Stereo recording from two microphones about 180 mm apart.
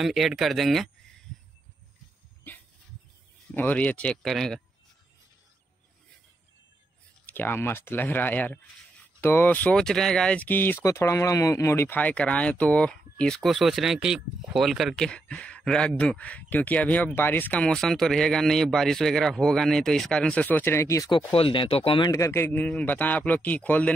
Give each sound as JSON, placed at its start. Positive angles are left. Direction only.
{"t": 0.0, "sound": "speech", "side_deg": 0}
{"t": 3.5, "sound": "speech", "side_deg": 10}
{"t": 7.2, "sound": "speech", "side_deg": 10}
{"t": 21.3, "sound": "speech", "side_deg": 30}
{"t": 22.1, "sound": "speech", "side_deg": 15}